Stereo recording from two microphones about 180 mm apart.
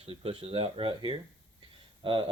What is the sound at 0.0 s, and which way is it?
Speech, 30° right (ahead or behind).